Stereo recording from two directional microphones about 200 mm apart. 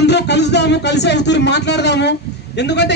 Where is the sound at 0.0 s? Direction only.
55° left (ahead or behind).